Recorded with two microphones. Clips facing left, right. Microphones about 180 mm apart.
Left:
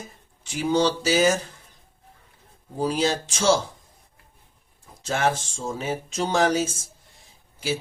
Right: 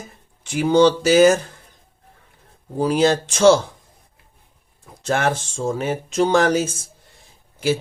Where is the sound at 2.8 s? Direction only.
60° right (ahead or behind).